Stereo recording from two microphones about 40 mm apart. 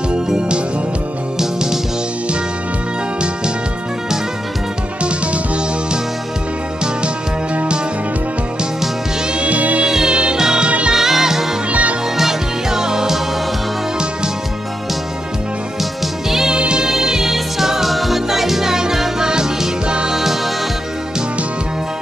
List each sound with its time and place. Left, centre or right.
0.1 s music: right
1.4 s music: centre
5.0 s music: right
7.5 s music: right
9.3 s music: right
9.8 s music: centre
11.7 s music: right
12.2 s music: centre
15.8 s music: centre
16.5 s music: right